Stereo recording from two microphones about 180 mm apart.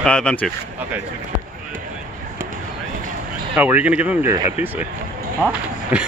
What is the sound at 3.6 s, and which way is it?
Speech, 10° right (ahead or behind).